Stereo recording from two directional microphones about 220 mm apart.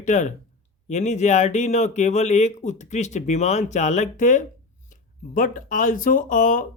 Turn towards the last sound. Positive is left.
turn(degrees=35)  # may be behind; listen again after turning